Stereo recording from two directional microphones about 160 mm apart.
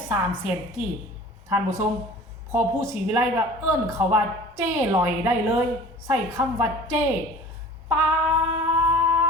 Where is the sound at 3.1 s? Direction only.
15° right (ahead or behind).